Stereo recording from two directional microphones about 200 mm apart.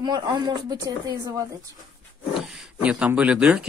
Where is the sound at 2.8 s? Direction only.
5° right (ahead or behind).